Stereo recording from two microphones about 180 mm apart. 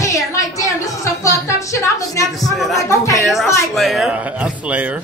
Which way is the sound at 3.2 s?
Centre (ahead or behind).